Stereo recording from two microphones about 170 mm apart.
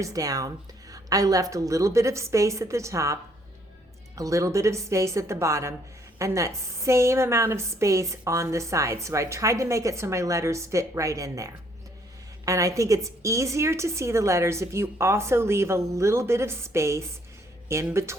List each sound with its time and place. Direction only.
0.0 s a woman's voice: 20° right (ahead or behind)